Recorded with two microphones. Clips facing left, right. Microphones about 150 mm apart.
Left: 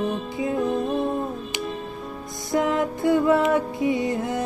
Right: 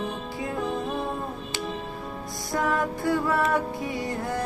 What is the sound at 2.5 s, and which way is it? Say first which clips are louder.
Music: left 4 dB; 20° left (ahead or behind).